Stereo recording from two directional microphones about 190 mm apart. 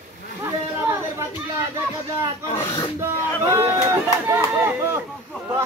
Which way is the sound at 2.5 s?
25° left (ahead or behind).